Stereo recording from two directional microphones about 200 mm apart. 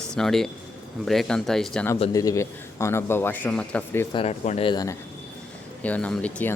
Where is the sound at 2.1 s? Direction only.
15° left (ahead or behind).